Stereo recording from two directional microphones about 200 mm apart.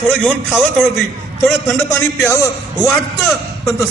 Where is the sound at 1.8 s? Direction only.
10° left (ahead or behind).